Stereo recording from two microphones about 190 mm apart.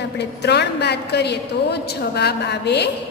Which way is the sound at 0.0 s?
60° left (ahead or behind).